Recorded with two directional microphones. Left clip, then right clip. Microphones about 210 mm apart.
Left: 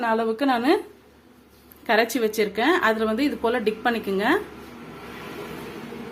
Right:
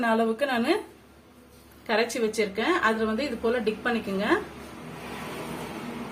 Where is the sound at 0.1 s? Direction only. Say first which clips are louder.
Left 5 dB; 45° left (ahead or behind).